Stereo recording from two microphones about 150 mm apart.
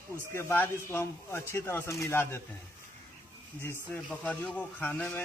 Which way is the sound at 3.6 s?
10° left (ahead or behind).